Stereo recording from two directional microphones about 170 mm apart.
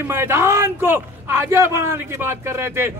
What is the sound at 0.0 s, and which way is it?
A man's voice, 15° right (ahead or behind).